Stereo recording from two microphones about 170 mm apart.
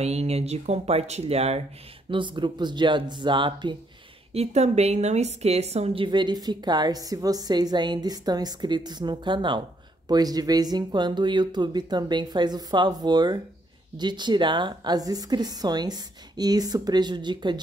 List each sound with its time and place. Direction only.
0.0 s a woman's voice: 40° right (ahead or behind)
4.3 s a woman's voice: 40° right (ahead or behind)